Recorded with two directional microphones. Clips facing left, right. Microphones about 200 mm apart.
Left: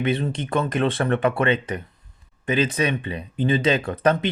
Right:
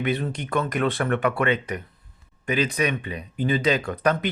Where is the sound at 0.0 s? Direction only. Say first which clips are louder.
Left 2 dB; 25° left (ahead or behind).